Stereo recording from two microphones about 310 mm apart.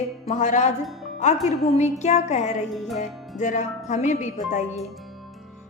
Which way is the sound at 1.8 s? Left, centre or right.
Left.